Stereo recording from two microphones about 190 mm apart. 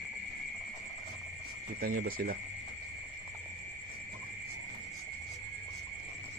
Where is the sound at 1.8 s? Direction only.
50° right (ahead or behind).